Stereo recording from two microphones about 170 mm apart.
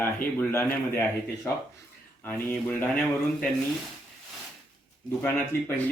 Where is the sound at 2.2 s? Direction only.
10° left (ahead or behind).